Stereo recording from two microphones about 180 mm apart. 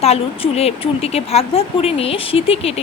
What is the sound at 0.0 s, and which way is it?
A woman's voice, 35° left (ahead or behind).